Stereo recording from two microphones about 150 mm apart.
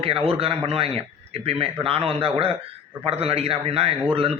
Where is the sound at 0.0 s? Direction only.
40° right (ahead or behind).